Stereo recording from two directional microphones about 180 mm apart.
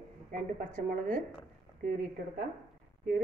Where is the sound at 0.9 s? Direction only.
50° right (ahead or behind).